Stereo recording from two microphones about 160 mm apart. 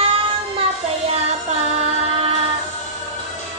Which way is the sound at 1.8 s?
40° right (ahead or behind).